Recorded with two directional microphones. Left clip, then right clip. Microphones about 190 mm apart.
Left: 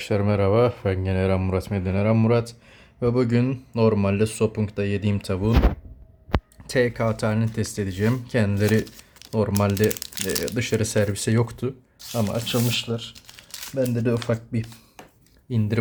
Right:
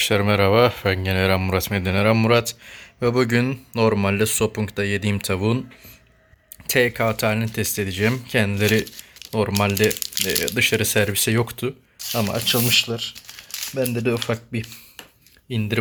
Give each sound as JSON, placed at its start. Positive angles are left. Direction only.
{"t": 0.0, "sound": "speech", "side_deg": 0}
{"t": 6.7, "sound": "speech", "side_deg": 0}